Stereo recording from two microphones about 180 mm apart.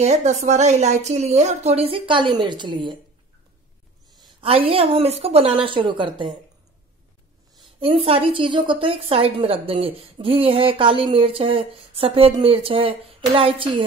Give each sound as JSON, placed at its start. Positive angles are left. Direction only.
{"t": 0.0, "sound": "a woman's voice", "side_deg": -40}
{"t": 4.4, "sound": "a woman's voice", "side_deg": -30}
{"t": 7.8, "sound": "a woman's voice", "side_deg": -30}